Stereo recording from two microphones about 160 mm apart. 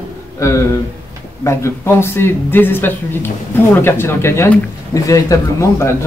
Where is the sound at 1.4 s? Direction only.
15° left (ahead or behind).